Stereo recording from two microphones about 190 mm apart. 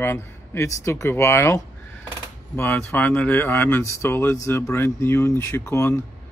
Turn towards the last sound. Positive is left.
turn(degrees=15)  # may be behind; listen again after turning